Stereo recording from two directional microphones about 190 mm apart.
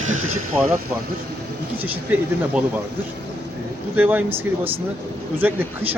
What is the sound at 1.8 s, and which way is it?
Speech, 10° right (ahead or behind).